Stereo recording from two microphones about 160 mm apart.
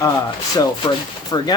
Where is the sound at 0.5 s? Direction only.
25° left (ahead or behind).